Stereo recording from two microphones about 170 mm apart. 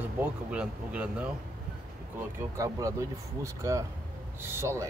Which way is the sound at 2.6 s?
20° right (ahead or behind).